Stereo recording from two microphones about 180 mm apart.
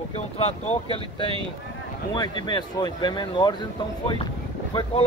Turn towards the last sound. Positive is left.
turn(degrees=25)  # may be behind; listen again after turning